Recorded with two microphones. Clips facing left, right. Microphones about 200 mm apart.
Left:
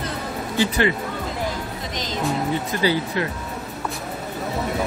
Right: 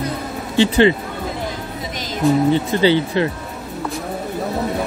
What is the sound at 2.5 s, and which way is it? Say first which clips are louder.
Speech: right 6 dB; 25° right (ahead or behind).